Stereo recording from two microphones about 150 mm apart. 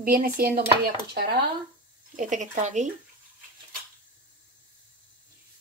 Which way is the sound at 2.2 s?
55° right (ahead or behind).